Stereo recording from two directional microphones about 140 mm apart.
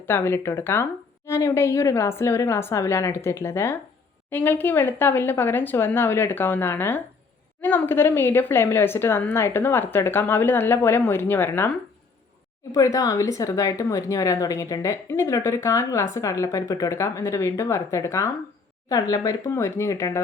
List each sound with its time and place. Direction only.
0.0 s a woman's voice: 15° left (ahead or behind)
12.7 s a woman's voice: 25° left (ahead or behind)